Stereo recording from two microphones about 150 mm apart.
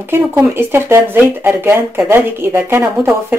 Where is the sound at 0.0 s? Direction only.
15° right (ahead or behind).